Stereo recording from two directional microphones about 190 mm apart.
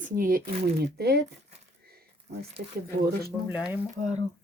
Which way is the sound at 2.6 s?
55° right (ahead or behind).